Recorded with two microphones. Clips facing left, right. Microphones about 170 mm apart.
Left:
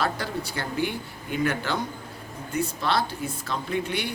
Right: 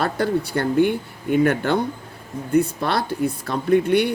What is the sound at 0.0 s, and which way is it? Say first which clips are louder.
A man's voice: right 7 dB; 55° right (ahead or behind).